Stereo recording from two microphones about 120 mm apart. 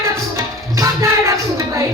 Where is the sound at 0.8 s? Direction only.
25° right (ahead or behind).